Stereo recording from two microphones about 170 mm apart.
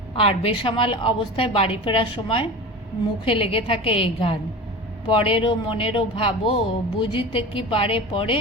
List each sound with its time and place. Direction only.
0.1 s speech: 35° left (ahead or behind)